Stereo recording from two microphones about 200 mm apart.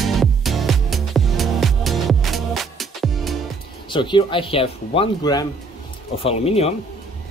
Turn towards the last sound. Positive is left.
turn(degrees=30)  # may be behind; listen again after turning